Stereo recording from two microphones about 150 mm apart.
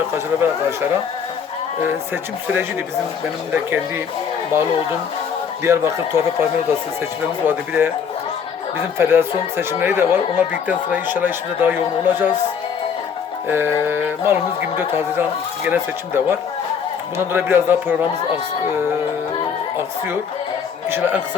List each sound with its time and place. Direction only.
3.5 s speech: 15° right (ahead or behind)
5.6 s speech: 15° right (ahead or behind)
9.0 s speech: 15° right (ahead or behind)
13.5 s speech: 15° right (ahead or behind)
20.9 s speech: 15° right (ahead or behind)